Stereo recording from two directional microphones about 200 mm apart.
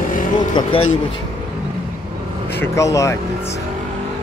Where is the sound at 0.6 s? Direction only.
25° left (ahead or behind).